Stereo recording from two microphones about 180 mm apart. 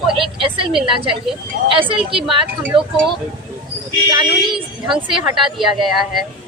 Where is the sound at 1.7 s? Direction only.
30° right (ahead or behind).